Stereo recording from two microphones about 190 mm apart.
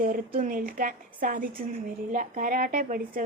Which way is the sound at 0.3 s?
45° right (ahead or behind).